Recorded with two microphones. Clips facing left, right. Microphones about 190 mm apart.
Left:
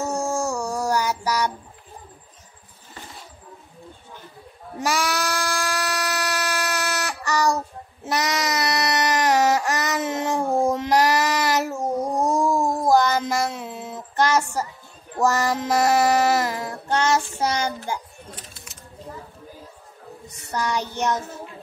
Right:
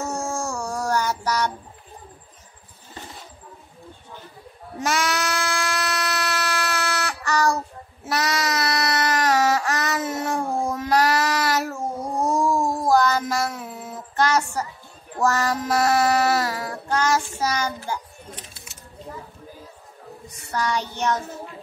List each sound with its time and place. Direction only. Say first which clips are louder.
0.1 s dog: left 3 dB; centre (ahead or behind)
0.6 s child singing: left 1 dB; 5° left (ahead or behind)
4.8 s a sound: even; 5° left (ahead or behind)
12.6 s child singing: left 1 dB; 15° left (ahead or behind)
15.1 s female singing: left 1 dB; 15° left (ahead or behind)
20.5 s female singing: even; 15° left (ahead or behind)